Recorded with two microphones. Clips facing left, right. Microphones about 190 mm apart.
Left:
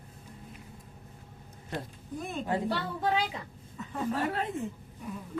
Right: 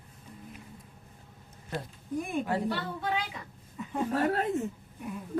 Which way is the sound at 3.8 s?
10° right (ahead or behind).